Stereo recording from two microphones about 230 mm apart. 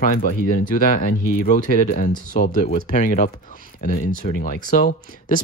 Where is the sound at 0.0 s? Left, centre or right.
Left.